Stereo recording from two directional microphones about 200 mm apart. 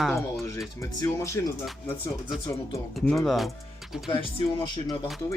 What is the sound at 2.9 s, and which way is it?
Speech, centre (ahead or behind).